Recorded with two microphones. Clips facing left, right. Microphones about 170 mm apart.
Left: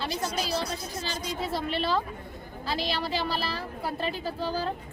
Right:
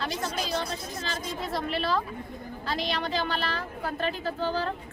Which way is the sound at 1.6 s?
30° left (ahead or behind).